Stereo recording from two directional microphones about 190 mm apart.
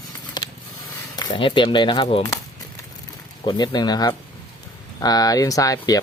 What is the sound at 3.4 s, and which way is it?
Speech, 20° left (ahead or behind).